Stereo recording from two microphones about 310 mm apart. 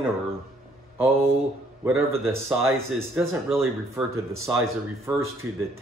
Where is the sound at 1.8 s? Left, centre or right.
Centre.